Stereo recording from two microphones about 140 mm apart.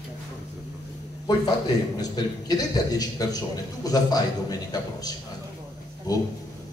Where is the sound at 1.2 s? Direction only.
30° left (ahead or behind).